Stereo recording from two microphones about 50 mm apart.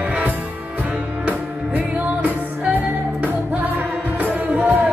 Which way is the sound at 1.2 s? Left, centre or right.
Right.